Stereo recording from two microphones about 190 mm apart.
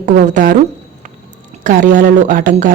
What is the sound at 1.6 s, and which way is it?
Speech, 40° right (ahead or behind).